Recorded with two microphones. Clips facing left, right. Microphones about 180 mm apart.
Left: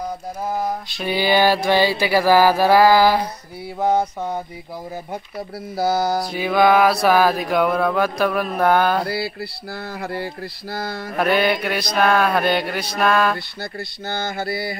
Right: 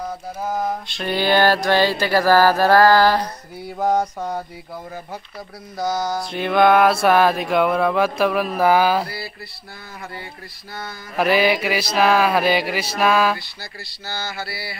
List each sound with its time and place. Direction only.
0.6 s mantra: 5° left (ahead or behind)
5.8 s mantra: 35° left (ahead or behind)
6.3 s a sound: 5° left (ahead or behind)
9.0 s mantra: 70° left (ahead or behind)
11.1 s a sound: 5° right (ahead or behind)
13.6 s speech: 55° left (ahead or behind)